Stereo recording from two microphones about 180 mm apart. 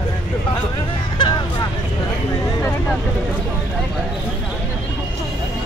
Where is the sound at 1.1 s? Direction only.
25° left (ahead or behind).